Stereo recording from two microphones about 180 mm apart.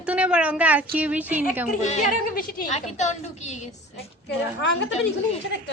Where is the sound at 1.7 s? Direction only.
40° left (ahead or behind).